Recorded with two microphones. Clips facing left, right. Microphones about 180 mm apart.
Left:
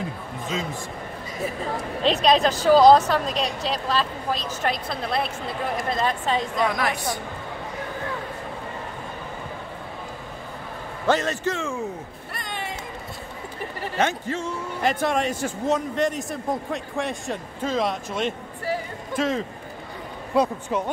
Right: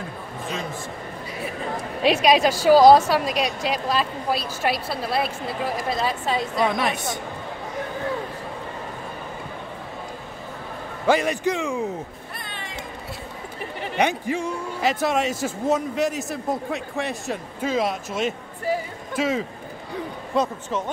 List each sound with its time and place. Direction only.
2.0 s a woman's voice: 10° right (ahead or behind)
6.6 s a woman's voice: 20° right (ahead or behind)
11.1 s a woman's voice: 10° right (ahead or behind)
13.9 s a woman's voice: 15° right (ahead or behind)
20.3 s speech: 5° left (ahead or behind)